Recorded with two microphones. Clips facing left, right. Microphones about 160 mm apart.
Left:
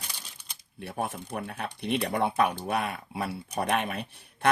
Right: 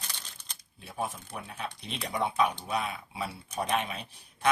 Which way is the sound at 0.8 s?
65° left (ahead or behind).